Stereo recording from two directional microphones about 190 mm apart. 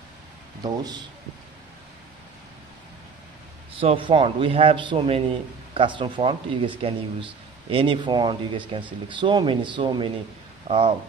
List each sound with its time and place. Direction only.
3.8 s speech: 30° right (ahead or behind)